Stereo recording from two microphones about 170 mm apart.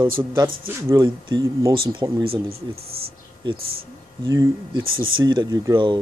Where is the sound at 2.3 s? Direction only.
65° right (ahead or behind).